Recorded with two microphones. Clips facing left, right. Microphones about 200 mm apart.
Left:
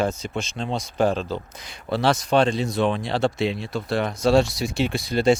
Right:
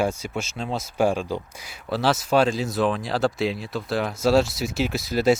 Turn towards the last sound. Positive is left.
turn(degrees=-5)  # may be behind; listen again after turning